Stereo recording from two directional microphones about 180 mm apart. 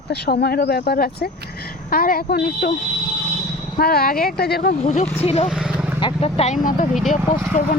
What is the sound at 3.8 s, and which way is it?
Speech, 60° left (ahead or behind).